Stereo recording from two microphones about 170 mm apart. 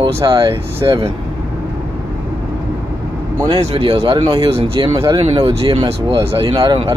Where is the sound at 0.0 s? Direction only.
25° right (ahead or behind).